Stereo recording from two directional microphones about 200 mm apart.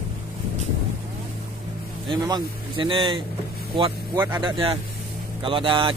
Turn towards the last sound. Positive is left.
turn(degrees=-25)  # may be behind; listen again after turning